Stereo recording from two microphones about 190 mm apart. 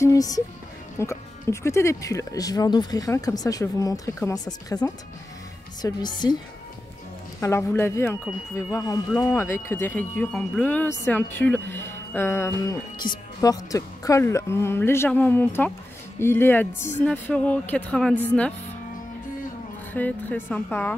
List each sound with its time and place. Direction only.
0.0 s a woman's voice: 15° left (ahead or behind)
7.3 s speech: 15° left (ahead or behind)
19.9 s speech: 10° left (ahead or behind)